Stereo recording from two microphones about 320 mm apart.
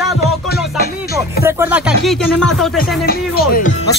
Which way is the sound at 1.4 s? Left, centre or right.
Centre.